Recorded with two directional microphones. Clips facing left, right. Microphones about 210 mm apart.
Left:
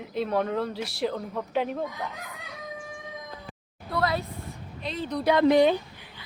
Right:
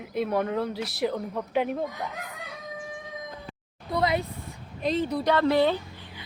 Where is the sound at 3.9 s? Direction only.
20° right (ahead or behind).